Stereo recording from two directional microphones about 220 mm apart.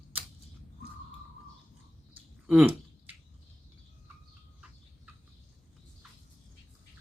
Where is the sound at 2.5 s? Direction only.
5° right (ahead or behind).